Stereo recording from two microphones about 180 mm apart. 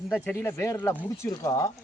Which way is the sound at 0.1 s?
10° left (ahead or behind).